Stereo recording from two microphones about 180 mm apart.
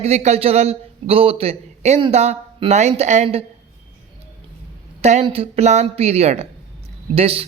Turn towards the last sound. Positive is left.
turn(degrees=-30)  # may be behind; listen again after turning